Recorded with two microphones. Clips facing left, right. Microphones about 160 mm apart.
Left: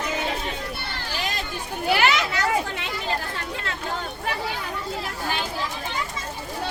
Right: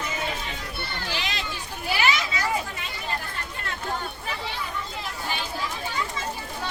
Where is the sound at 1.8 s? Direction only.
65° left (ahead or behind); by 3.2 s 85° left.